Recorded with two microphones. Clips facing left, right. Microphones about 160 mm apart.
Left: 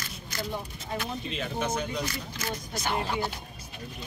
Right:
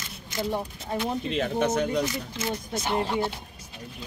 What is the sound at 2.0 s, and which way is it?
Speech, 25° right (ahead or behind).